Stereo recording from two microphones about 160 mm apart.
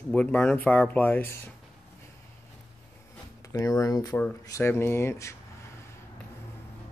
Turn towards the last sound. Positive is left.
turn(degrees=15)  # may be behind; listen again after turning